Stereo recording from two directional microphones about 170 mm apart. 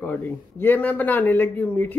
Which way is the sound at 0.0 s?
10° left (ahead or behind).